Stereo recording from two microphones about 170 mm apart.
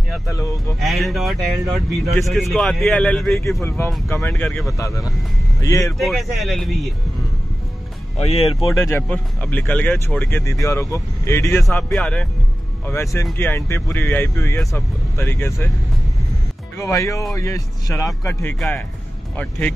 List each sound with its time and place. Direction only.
0.3 s speech: 20° left (ahead or behind)
0.7 s speech: centre (ahead or behind)
4.6 s speech: 20° left (ahead or behind)
5.9 s speech: centre (ahead or behind)
8.2 s speech: 40° left (ahead or behind)
8.7 s speech: 15° left (ahead or behind)
9.0 s speech: 5° left (ahead or behind)
11.6 s speech: 5° left (ahead or behind)
12.8 s speech: 15° left (ahead or behind)
16.7 s speech: 20° left (ahead or behind)